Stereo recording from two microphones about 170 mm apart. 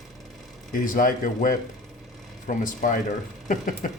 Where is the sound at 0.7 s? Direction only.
55° left (ahead or behind).